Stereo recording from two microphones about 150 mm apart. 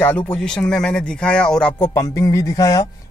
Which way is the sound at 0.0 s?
10° left (ahead or behind).